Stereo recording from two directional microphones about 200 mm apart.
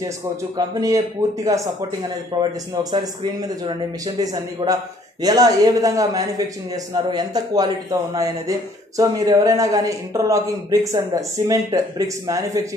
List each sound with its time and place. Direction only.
0.6 s speech: 15° right (ahead or behind)